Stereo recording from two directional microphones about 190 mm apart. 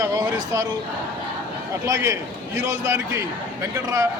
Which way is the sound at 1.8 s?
15° right (ahead or behind).